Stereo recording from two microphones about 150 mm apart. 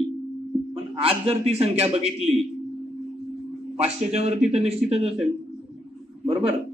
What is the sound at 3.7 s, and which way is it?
A man's voice, 45° right (ahead or behind).